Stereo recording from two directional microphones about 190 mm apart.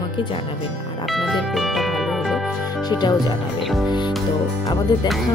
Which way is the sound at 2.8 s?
20° left (ahead or behind).